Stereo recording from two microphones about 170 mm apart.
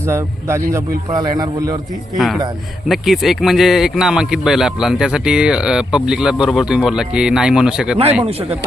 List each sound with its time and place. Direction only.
0.1 s a man's voice: 15° right (ahead or behind)
2.1 s speech: centre (ahead or behind)
8.2 s speech: 35° right (ahead or behind)